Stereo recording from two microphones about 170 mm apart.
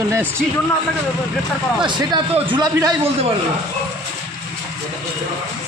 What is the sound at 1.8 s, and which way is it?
A man's voice, 30° right (ahead or behind).